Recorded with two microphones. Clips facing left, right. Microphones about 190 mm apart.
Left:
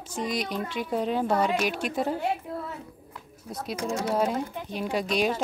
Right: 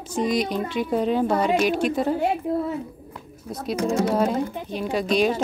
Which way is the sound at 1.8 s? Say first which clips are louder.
Right 6 dB; 10° left (ahead or behind).